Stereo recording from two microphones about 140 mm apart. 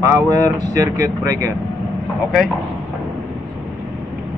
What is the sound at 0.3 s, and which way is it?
Speech, 25° right (ahead or behind).